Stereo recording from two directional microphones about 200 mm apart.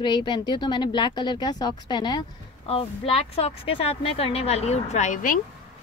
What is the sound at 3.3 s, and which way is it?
Speech, 30° left (ahead or behind).